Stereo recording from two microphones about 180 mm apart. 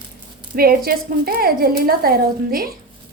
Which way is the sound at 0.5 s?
55° right (ahead or behind).